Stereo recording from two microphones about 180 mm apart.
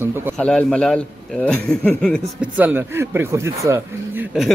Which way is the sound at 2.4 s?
10° right (ahead or behind).